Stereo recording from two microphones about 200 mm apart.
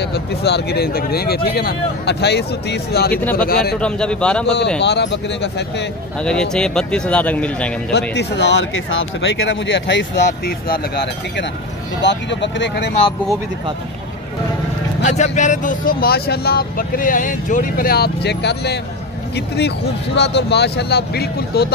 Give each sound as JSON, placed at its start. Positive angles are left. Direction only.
{"t": 0.0, "sound": "speech", "side_deg": 55}
{"t": 3.7, "sound": "speech", "side_deg": 5}
{"t": 4.8, "sound": "speech", "side_deg": 60}
{"t": 6.2, "sound": "speech", "side_deg": 5}
{"t": 7.9, "sound": "speech", "side_deg": 60}
{"t": 15.0, "sound": "speech", "side_deg": 35}